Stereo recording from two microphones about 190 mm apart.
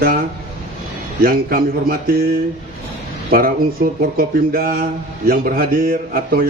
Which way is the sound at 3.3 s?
50° right (ahead or behind).